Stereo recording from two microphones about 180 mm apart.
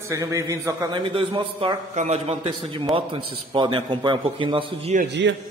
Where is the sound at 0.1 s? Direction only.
20° right (ahead or behind).